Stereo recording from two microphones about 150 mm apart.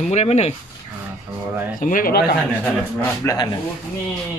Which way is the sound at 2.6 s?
10° left (ahead or behind).